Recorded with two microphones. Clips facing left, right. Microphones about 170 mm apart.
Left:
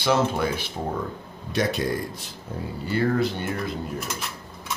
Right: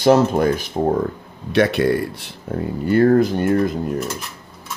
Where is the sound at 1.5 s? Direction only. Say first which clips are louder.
Right 8 dB; 65° right (ahead or behind).